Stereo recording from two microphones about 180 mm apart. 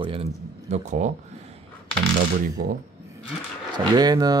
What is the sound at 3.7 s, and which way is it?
Speech, 20° right (ahead or behind).